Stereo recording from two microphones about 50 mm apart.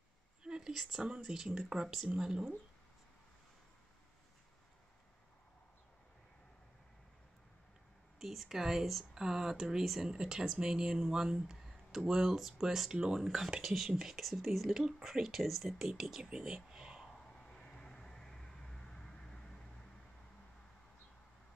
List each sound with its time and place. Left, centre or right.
0.4 s a sound: centre
1.2 s speech: centre
8.2 s speech: centre
17.1 s vehicle: centre